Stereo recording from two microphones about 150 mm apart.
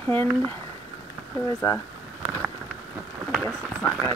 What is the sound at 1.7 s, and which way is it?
Speech, 20° left (ahead or behind).